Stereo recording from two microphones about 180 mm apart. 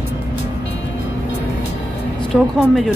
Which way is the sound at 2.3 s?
Centre (ahead or behind).